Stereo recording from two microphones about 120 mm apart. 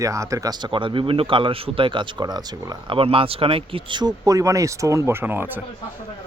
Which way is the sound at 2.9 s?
50° right (ahead or behind).